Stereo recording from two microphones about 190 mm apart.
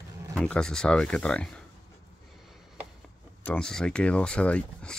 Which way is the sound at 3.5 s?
5° left (ahead or behind).